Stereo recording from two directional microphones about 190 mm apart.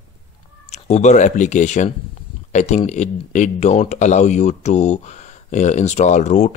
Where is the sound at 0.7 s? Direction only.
35° left (ahead or behind).